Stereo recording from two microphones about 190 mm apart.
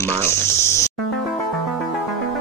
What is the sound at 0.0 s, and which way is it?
Insect, 15° left (ahead or behind).